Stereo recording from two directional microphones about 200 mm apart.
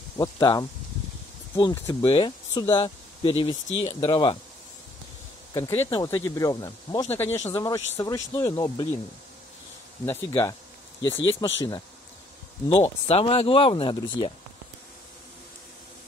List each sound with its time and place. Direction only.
0.2 s speech: 20° left (ahead or behind)
5.5 s speech: 15° left (ahead or behind)
10.0 s speech: 15° left (ahead or behind)
12.6 s speech: 25° left (ahead or behind)